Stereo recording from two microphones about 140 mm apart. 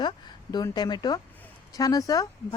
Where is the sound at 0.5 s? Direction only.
30° left (ahead or behind).